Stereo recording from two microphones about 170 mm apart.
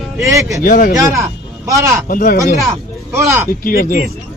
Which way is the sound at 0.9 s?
20° right (ahead or behind).